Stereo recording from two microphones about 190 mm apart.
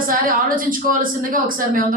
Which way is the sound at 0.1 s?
45° right (ahead or behind).